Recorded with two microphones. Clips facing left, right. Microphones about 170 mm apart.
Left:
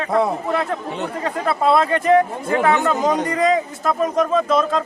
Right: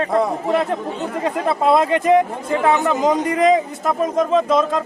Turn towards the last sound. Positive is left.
turn(degrees=-20)  # may be behind; listen again after turning